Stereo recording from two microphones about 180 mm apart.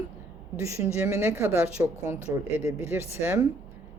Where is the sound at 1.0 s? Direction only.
15° right (ahead or behind).